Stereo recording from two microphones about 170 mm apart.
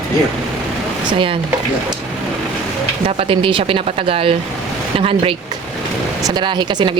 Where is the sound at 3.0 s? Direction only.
30° right (ahead or behind).